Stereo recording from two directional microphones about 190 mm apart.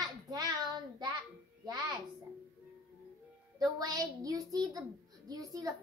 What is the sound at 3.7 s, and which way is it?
A child's voice, 20° right (ahead or behind).